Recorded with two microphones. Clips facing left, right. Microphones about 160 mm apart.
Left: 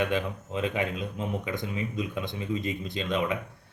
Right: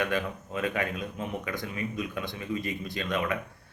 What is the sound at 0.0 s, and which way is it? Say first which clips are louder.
Speech: left 2 dB; 20° left (ahead or behind).